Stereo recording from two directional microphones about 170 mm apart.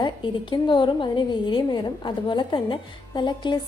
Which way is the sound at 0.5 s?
30° left (ahead or behind).